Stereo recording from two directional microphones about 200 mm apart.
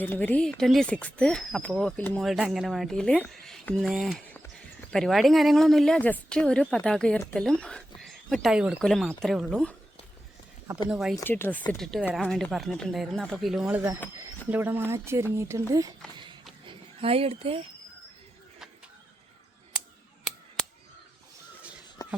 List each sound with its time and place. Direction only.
0.0 s speech: 10° left (ahead or behind)
10.8 s speech: centre (ahead or behind)
11.2 s speech: 10° left (ahead or behind); by 16.0 s 15° right (ahead or behind)
16.1 s a sound: 25° right (ahead or behind)
16.6 s speech: 30° right (ahead or behind)
22.0 s a sound: 15° left (ahead or behind)